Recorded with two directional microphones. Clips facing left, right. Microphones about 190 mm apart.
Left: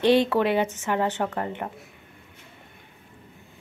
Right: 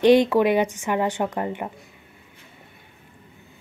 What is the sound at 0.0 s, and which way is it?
A woman's voice, 15° right (ahead or behind).